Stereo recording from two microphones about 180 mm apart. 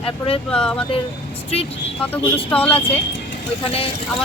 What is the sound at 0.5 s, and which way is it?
Speech, 5° left (ahead or behind).